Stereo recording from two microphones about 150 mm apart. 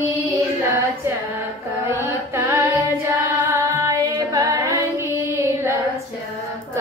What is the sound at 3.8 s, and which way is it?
Music, 25° right (ahead or behind).